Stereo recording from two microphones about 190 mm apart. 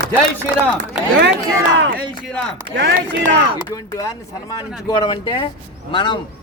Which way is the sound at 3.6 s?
20° left (ahead or behind).